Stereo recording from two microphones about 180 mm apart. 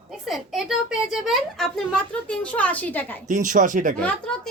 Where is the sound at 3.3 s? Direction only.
45° right (ahead or behind).